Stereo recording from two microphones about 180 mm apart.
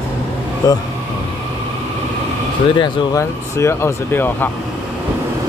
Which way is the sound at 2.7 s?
25° left (ahead or behind).